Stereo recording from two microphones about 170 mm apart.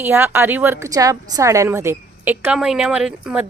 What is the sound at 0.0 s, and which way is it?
A woman's voice, 15° right (ahead or behind).